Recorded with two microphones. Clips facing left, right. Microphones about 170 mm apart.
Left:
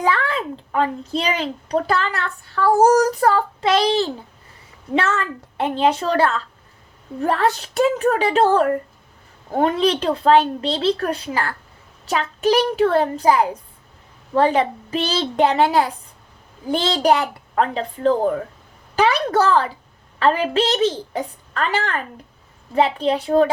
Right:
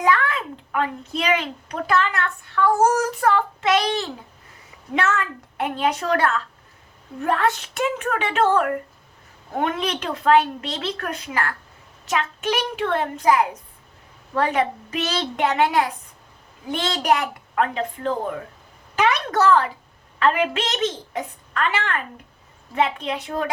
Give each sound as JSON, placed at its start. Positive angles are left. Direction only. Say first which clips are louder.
{"t": 0.0, "sound": "a woman's voice", "louder": "even", "side_deg": 30}